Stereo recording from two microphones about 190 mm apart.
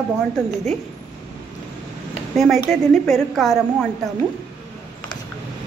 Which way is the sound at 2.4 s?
Centre (ahead or behind).